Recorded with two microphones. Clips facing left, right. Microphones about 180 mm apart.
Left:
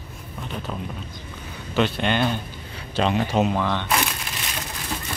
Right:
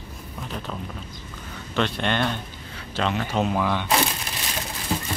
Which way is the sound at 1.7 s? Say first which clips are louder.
Left 2 dB; 5° left (ahead or behind).